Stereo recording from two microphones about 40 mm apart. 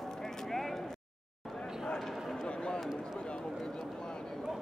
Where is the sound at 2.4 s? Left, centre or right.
Left.